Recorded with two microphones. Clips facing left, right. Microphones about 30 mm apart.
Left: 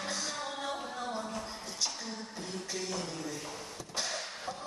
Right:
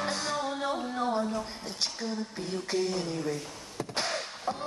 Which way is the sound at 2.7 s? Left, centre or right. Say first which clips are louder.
Right 8 dB; right.